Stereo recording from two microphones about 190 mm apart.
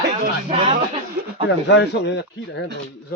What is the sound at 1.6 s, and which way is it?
Speech, 65° left (ahead or behind).